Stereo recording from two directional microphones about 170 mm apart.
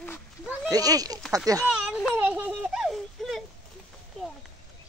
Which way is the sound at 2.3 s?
10° right (ahead or behind).